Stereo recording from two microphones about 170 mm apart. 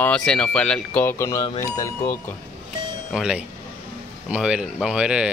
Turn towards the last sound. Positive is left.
turn(degrees=-5)  # may be behind; listen again after turning